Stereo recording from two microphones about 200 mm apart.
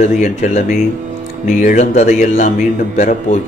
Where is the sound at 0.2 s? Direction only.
35° left (ahead or behind).